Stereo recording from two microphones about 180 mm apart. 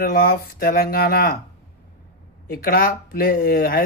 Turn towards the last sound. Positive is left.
turn(degrees=50)  # may be behind; listen again after turning